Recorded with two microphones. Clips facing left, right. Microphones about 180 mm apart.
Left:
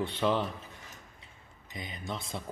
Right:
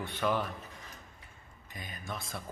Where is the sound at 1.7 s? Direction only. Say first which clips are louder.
Left 3 dB; 20° left (ahead or behind).